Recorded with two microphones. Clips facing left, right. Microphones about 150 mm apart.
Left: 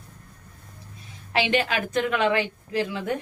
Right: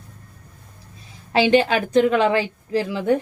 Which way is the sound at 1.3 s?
30° right (ahead or behind).